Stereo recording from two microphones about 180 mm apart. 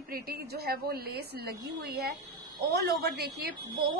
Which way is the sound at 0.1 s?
60° right (ahead or behind).